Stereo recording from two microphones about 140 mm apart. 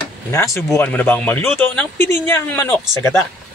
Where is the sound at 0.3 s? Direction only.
20° left (ahead or behind).